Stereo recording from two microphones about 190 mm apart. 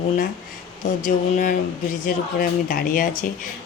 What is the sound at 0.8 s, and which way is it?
Speech, 40° left (ahead or behind).